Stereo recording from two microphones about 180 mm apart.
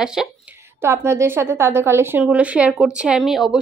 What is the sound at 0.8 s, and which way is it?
A woman's voice, 15° right (ahead or behind).